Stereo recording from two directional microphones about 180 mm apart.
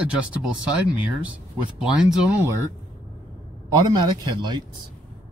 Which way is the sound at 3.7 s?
25° right (ahead or behind).